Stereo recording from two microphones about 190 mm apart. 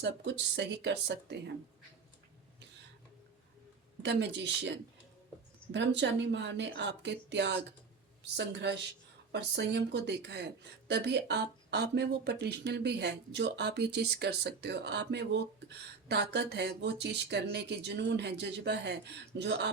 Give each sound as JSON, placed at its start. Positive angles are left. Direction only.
{"t": 0.0, "sound": "a woman's voice", "side_deg": -65}
{"t": 4.0, "sound": "a woman's voice", "side_deg": -65}
{"t": 5.7, "sound": "a woman's voice", "side_deg": -70}